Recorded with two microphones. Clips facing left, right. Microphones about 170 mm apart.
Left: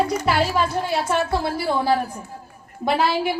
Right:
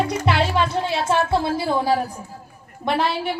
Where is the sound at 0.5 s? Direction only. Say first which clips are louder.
Even; 50° left (ahead or behind).